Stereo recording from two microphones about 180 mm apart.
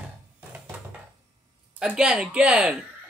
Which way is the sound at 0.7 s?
10° right (ahead or behind).